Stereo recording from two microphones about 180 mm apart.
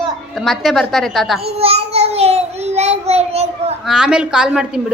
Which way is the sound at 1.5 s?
35° right (ahead or behind).